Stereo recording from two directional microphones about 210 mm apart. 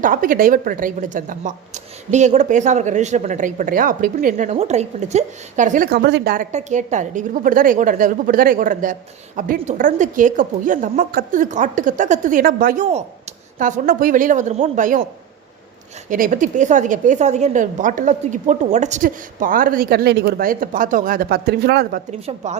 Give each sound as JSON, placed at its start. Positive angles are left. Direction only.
{"t": 0.0, "sound": "a woman's voice", "side_deg": -40}
{"t": 16.0, "sound": "a woman's voice", "side_deg": -40}